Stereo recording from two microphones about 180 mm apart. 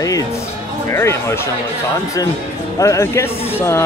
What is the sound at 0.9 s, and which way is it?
Speech, 15° left (ahead or behind).